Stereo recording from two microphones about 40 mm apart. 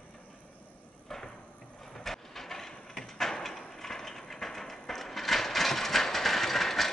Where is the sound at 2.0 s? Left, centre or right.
Centre.